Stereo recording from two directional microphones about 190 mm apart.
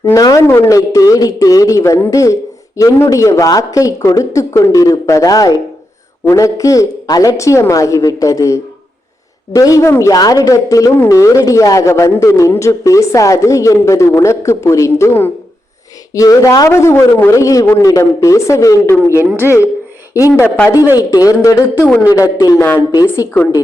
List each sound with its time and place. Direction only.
0.0 s speech: 20° left (ahead or behind)
19.2 s a woman's voice: 10° right (ahead or behind)
20.2 s speech: 15° left (ahead or behind)